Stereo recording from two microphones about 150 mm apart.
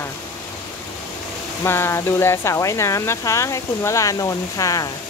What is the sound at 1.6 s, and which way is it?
Speech, 15° left (ahead or behind).